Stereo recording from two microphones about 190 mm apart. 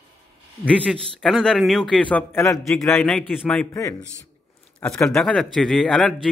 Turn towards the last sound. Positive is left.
turn(degrees=5)  # may be behind; listen again after turning